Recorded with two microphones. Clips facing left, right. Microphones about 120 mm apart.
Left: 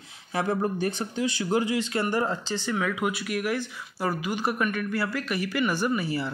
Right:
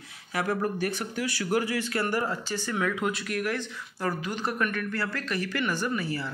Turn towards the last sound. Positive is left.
turn(degrees=15)  # may be behind; listen again after turning